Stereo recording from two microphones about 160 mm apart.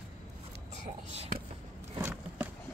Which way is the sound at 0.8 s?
40° right (ahead or behind).